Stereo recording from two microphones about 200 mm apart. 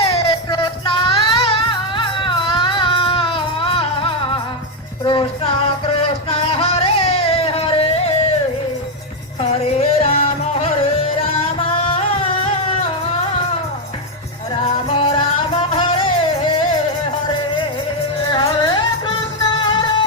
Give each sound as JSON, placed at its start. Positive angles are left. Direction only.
{"t": 0.0, "sound": "music", "side_deg": 25}
{"t": 9.4, "sound": "music", "side_deg": 30}
{"t": 14.8, "sound": "music", "side_deg": 25}
{"t": 18.3, "sound": "music", "side_deg": 20}